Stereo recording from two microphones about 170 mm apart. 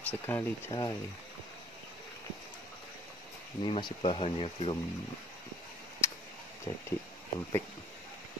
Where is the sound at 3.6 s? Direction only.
25° left (ahead or behind).